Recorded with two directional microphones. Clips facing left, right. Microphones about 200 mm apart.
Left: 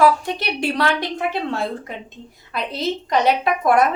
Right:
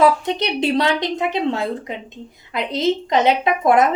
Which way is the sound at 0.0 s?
20° right (ahead or behind).